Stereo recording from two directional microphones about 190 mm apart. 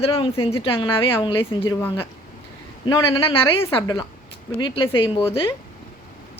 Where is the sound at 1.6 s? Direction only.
10° left (ahead or behind).